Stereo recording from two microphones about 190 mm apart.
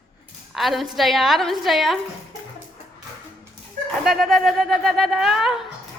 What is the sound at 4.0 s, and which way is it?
Speech, centre (ahead or behind).